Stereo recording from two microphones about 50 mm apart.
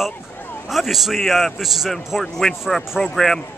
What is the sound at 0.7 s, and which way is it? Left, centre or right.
A man's voice, centre.